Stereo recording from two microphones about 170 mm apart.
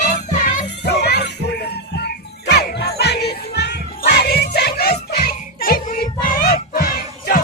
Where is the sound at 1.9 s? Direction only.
75° left (ahead or behind); by 7.4 s 60° left (ahead or behind).